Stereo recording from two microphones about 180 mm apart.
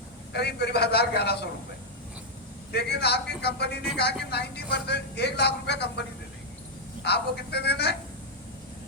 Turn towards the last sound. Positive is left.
turn(degrees=65)  # may be behind; listen again after turning